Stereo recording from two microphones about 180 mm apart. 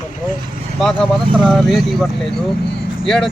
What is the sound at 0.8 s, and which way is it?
Speech, 5° left (ahead or behind).